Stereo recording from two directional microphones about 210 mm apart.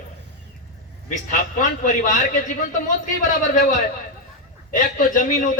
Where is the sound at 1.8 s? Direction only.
35° left (ahead or behind).